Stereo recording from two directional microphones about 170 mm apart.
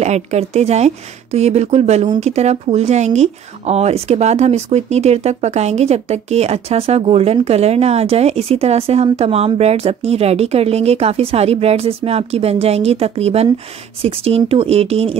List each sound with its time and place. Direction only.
0.0 s speech: 40° right (ahead or behind)